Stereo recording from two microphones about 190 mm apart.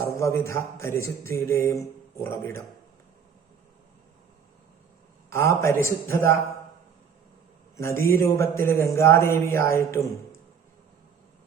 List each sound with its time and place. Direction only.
0.2 s a man's voice: 15° left (ahead or behind)
5.3 s a man's voice: 15° left (ahead or behind)
7.8 s a man's voice: 15° left (ahead or behind)